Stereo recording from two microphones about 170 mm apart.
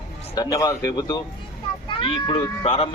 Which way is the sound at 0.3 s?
20° left (ahead or behind).